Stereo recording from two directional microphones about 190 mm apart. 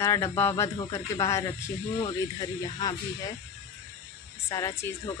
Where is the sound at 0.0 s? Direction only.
15° left (ahead or behind).